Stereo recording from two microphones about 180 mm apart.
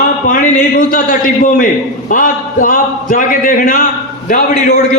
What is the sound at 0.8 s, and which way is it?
Speech, 45° left (ahead or behind).